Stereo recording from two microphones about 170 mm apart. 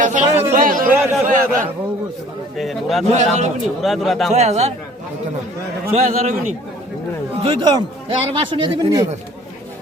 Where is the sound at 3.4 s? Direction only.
45° right (ahead or behind).